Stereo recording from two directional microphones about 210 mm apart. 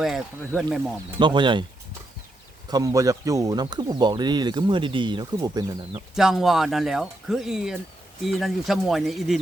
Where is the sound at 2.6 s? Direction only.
15° right (ahead or behind).